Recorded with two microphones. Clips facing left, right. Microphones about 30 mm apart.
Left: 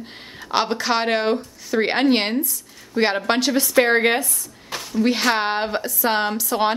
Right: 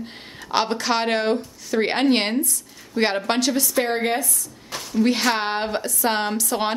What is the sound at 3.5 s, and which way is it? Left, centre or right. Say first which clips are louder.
Speech: left 5 dB; left.